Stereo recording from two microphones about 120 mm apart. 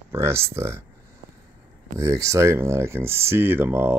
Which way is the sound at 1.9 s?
25° right (ahead or behind).